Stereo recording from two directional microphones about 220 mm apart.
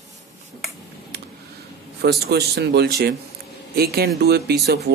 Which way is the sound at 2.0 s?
45° right (ahead or behind).